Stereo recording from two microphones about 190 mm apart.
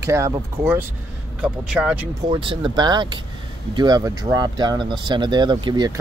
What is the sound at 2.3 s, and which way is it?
Speech, 25° right (ahead or behind).